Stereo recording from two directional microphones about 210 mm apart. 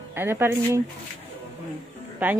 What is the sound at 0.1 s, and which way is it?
Speech, 10° right (ahead or behind).